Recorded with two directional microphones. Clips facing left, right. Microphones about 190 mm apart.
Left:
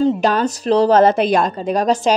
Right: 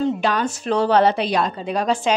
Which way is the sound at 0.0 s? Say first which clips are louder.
Left 5 dB; 40° left (ahead or behind).